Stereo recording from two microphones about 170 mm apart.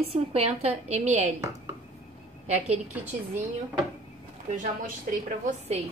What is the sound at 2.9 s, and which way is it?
Speech, 10° right (ahead or behind).